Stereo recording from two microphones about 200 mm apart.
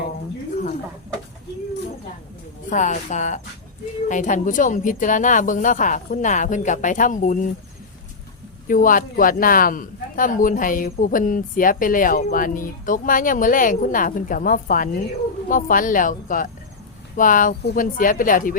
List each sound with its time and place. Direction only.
2.6 s speech: 40° left (ahead or behind)
8.6 s a man's voice: 45° left (ahead or behind)